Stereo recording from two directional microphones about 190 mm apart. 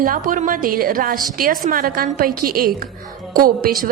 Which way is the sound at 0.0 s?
45° right (ahead or behind).